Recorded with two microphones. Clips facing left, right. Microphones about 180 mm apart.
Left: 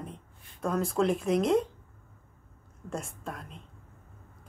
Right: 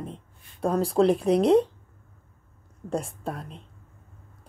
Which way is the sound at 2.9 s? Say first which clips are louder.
Right 7 dB; 35° right (ahead or behind).